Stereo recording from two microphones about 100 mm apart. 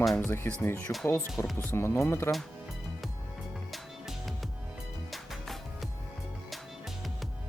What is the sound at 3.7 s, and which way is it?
Music, centre (ahead or behind).